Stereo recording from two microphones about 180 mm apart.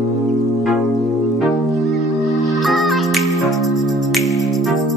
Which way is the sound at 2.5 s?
Centre (ahead or behind).